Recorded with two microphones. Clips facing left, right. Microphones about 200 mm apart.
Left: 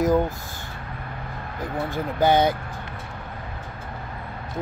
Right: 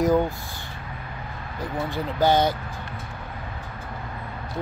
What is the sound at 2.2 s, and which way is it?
Speech, 55° left (ahead or behind).